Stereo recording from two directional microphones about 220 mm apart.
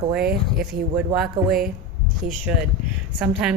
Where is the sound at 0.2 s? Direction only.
45° right (ahead or behind).